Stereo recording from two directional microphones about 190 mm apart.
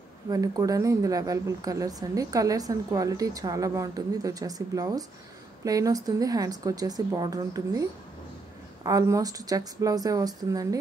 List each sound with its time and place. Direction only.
0.3 s speech: 20° right (ahead or behind)